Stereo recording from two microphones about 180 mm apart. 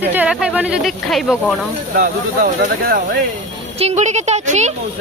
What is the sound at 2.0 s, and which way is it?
Speech, 55° right (ahead or behind).